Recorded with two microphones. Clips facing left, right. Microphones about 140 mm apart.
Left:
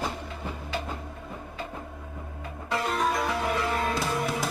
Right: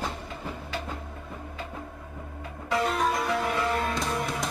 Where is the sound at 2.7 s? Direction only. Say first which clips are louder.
Right 1 dB; centre (ahead or behind).